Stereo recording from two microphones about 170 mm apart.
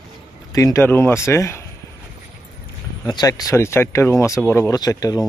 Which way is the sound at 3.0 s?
25° left (ahead or behind).